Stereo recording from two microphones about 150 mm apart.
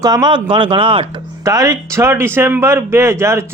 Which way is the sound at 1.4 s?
20° right (ahead or behind).